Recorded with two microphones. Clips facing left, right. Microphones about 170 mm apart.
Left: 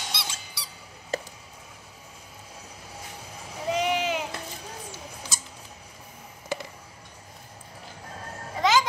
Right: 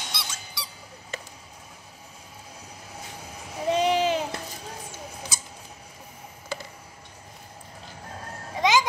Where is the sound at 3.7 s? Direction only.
30° right (ahead or behind).